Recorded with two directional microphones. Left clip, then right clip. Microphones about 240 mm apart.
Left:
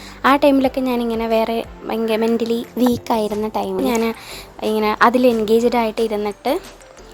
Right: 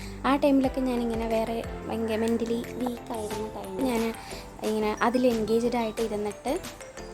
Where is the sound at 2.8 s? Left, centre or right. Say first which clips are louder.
Left 14 dB; left.